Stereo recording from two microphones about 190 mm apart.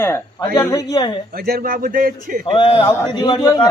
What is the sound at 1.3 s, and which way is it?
A man's voice, 50° right (ahead or behind).